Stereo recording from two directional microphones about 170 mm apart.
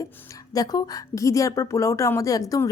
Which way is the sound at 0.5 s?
20° left (ahead or behind).